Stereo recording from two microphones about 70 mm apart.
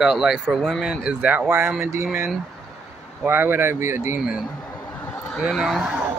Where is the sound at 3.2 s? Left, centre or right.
Right.